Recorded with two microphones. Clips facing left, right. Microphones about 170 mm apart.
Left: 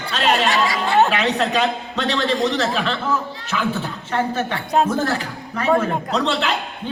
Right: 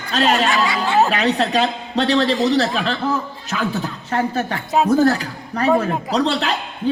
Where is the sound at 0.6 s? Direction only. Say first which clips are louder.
Right 1 dB; 35° left (ahead or behind).